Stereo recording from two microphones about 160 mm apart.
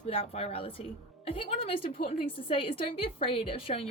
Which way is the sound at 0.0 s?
35° left (ahead or behind).